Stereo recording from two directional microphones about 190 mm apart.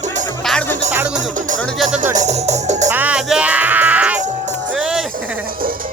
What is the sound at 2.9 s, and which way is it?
Speech, 10° right (ahead or behind).